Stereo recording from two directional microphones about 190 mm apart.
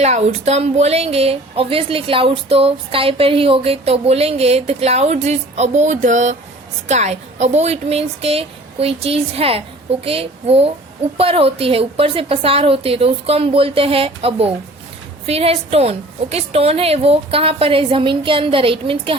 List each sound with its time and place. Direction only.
0.0 s a woman's voice: 35° right (ahead or behind)